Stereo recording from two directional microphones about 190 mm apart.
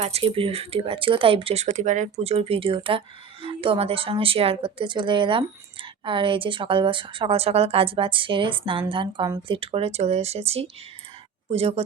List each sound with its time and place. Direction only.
0.0 s a woman's voice: 30° right (ahead or behind)